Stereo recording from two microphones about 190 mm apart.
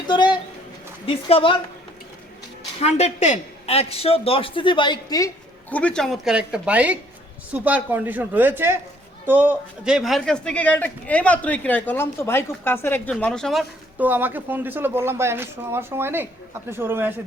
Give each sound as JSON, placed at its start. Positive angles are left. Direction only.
{"t": 0.1, "sound": "a sound", "side_deg": 25}
{"t": 1.0, "sound": "a woman's voice", "side_deg": 30}
{"t": 2.8, "sound": "a man's voice", "side_deg": 35}
{"t": 5.7, "sound": "a man's voice", "side_deg": 5}